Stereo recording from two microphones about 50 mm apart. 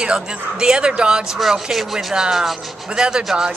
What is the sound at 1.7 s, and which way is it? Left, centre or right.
Speech, centre.